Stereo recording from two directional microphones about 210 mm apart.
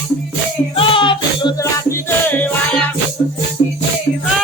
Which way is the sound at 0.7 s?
25° left (ahead or behind).